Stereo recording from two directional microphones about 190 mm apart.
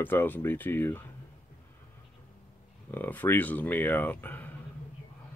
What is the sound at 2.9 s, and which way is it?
Speech, 10° left (ahead or behind).